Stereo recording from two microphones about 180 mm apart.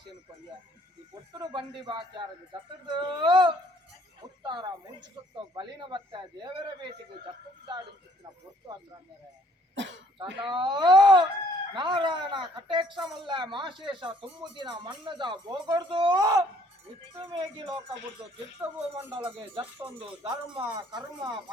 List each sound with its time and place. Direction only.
1.3 s a woman's voice: 25° right (ahead or behind)
9.7 s speech: 85° right
10.2 s a woman's voice: 25° right (ahead or behind)